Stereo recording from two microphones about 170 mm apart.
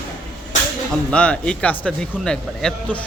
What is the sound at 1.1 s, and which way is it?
Speech, 5° left (ahead or behind).